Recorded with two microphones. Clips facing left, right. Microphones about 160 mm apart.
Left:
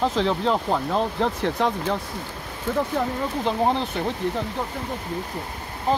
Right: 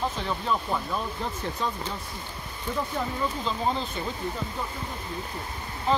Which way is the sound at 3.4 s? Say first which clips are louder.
Left 6 dB; 70° left (ahead or behind).